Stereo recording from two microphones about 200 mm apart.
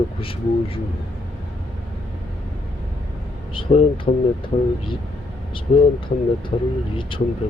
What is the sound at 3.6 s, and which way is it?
Speech, 25° left (ahead or behind).